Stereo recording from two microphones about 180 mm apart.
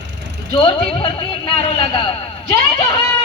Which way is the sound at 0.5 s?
30° left (ahead or behind).